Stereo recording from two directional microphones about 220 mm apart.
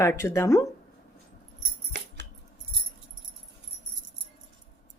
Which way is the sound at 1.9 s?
50° right (ahead or behind).